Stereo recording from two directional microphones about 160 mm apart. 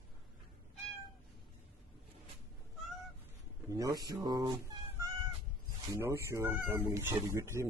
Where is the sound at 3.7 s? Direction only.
20° right (ahead or behind).